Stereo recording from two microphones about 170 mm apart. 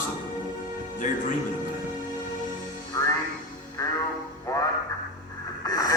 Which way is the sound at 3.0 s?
20° left (ahead or behind).